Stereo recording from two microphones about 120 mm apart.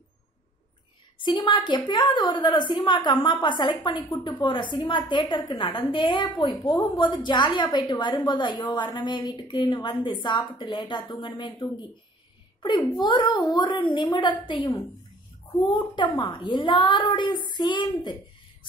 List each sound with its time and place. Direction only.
1.2 s a woman's voice: 40° left (ahead or behind)
16.0 s a woman's voice: 40° left (ahead or behind)